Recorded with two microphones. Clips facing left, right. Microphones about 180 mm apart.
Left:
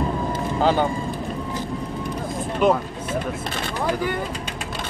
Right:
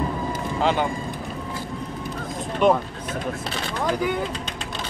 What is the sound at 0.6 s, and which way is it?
Speech, 35° left (ahead or behind).